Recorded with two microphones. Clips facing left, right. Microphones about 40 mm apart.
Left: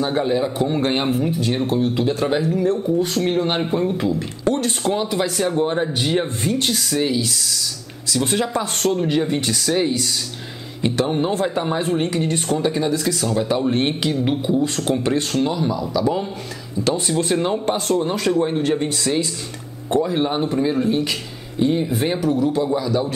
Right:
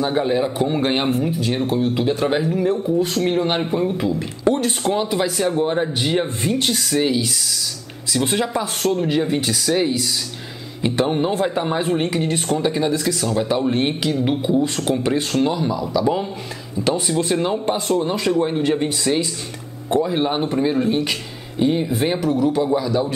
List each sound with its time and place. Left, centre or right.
0.0 s speech: centre
3.3 s speech: centre
4.5 s speech: centre
11.1 s speech: centre
12.4 s speech: centre
14.4 s speech: centre
18.7 s speech: right